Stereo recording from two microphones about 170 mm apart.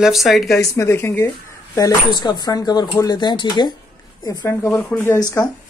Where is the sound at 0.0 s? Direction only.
Centre (ahead or behind).